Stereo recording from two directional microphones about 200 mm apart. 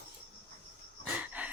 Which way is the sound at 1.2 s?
5° right (ahead or behind).